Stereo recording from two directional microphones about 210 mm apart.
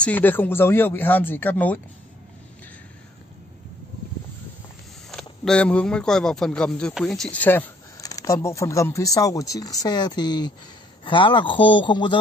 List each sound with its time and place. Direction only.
0.0 s speech: 10° left (ahead or behind)
5.1 s a man's voice: 5° left (ahead or behind); by 12.2 s 20° left (ahead or behind)